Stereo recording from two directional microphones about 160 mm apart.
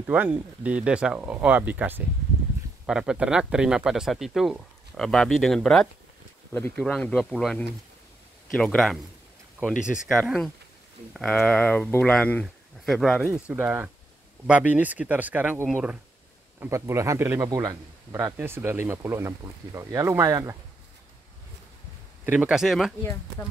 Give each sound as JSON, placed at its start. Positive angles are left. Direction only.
{"t": 0.1, "sound": "a man's voice", "side_deg": -10}
{"t": 10.0, "sound": "speech", "side_deg": 0}
{"t": 13.3, "sound": "a man's voice", "side_deg": -10}
{"t": 22.2, "sound": "speech", "side_deg": -10}